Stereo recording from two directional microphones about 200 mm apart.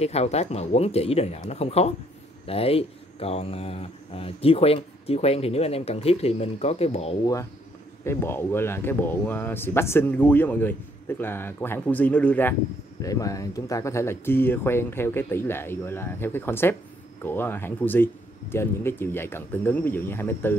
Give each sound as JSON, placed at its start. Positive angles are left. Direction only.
{"t": 0.0, "sound": "speech", "side_deg": 30}
{"t": 8.0, "sound": "speech", "side_deg": 10}